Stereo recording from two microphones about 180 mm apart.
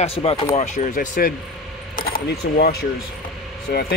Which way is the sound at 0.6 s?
45° left (ahead or behind).